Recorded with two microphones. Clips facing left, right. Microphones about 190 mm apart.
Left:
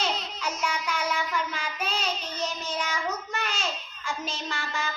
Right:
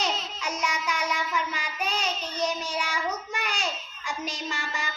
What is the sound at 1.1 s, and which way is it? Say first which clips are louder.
Child singing: even; 5° right (ahead or behind).